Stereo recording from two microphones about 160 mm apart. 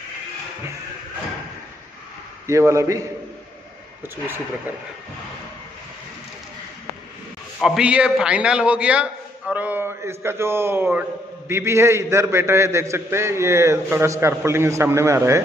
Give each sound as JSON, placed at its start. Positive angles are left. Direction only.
{"t": 2.4, "sound": "a man's voice", "side_deg": -15}
{"t": 7.6, "sound": "a man's voice", "side_deg": -5}